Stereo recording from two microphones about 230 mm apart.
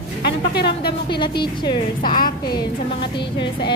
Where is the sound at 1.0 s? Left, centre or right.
Centre.